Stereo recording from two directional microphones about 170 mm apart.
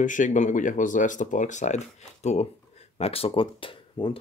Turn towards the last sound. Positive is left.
turn(degrees=30)  # may be behind; listen again after turning